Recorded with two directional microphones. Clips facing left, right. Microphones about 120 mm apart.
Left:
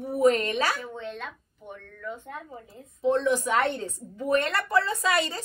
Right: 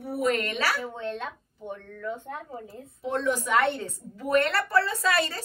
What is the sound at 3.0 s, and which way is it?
A woman's voice, 25° left (ahead or behind).